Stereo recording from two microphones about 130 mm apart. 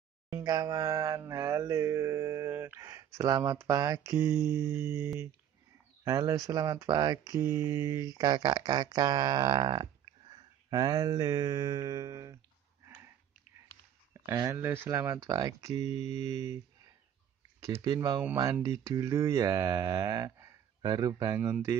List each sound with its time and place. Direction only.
0.4 s mantra: 30° right (ahead or behind)
10.3 s a sound: 30° right (ahead or behind)
14.3 s speech: 30° right (ahead or behind)
14.6 s mantra: 20° right (ahead or behind)
17.6 s mantra: 25° right (ahead or behind)